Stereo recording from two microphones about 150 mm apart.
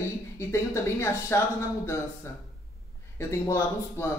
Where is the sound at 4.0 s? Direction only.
15° left (ahead or behind).